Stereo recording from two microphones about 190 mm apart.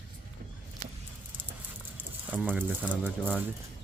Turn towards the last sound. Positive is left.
turn(degrees=5)  # may be behind; listen again after turning